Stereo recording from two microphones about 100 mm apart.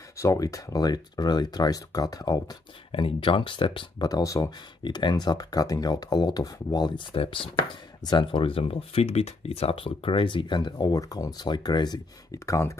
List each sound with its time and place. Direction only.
0.2 s speech: 35° left (ahead or behind)
2.9 s speech: 65° left (ahead or behind)
4.0 s speech: 35° left (ahead or behind)
4.8 s speech: 50° left (ahead or behind)
7.2 s speech: 60° left (ahead or behind)
8.0 s speech: 45° left (ahead or behind); by 12.7 s 30° left (ahead or behind)